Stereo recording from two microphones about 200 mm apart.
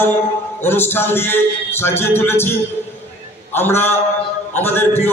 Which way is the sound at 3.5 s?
10° left (ahead or behind).